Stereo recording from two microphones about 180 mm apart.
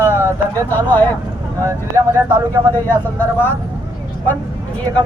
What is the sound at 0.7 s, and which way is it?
Speech, 10° left (ahead or behind).